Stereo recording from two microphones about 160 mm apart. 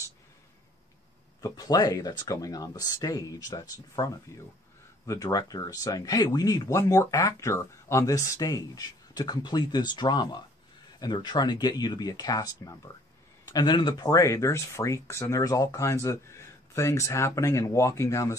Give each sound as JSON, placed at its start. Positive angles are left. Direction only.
{"t": 1.4, "sound": "speech", "side_deg": 25}